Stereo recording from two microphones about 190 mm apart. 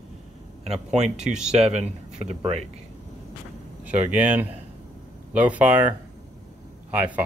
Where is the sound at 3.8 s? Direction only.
5° right (ahead or behind).